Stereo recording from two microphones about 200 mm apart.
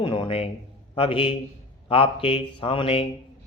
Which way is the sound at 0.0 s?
25° left (ahead or behind).